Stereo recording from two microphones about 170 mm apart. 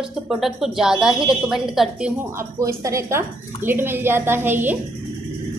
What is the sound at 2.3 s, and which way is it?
A woman's voice, 20° right (ahead or behind).